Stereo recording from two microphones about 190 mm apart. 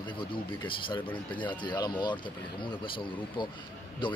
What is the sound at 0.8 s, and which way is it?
Speech, 25° left (ahead or behind).